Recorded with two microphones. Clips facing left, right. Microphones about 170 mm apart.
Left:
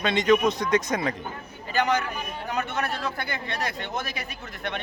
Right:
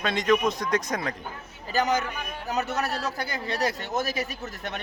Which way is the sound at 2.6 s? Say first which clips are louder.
Right 1 dB; 40° right (ahead or behind).